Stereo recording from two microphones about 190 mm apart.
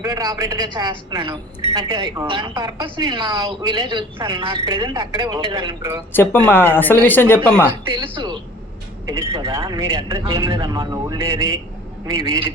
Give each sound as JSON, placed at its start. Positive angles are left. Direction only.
{"t": 0.0, "sound": "speech", "side_deg": -20}
{"t": 6.1, "sound": "a woman's voice", "side_deg": 10}
{"t": 7.9, "sound": "speech", "side_deg": -25}